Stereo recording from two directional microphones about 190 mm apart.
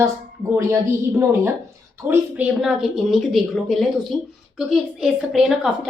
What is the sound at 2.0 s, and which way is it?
A woman's voice, 5° right (ahead or behind).